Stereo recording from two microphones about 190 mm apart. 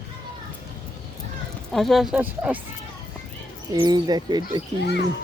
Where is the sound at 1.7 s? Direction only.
Centre (ahead or behind).